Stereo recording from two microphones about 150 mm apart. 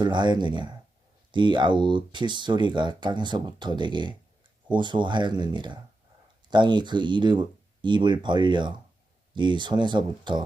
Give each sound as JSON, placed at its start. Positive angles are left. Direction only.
{"t": 0.0, "sound": "speech", "side_deg": -30}